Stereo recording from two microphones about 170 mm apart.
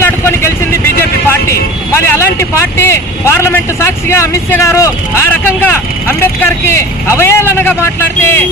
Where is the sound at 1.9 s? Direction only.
15° left (ahead or behind).